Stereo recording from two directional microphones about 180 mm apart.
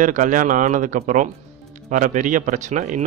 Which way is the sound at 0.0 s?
45° right (ahead or behind).